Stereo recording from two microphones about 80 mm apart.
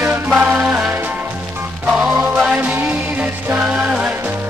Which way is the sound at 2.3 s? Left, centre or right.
Centre.